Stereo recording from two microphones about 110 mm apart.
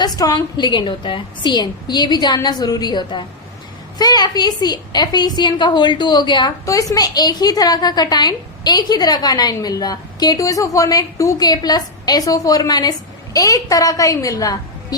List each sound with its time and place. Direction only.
0.0 s a woman's voice: 35° left (ahead or behind)
6.7 s a woman's voice: 30° left (ahead or behind)